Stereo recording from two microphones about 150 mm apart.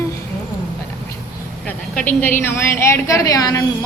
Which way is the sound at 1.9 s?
10° left (ahead or behind).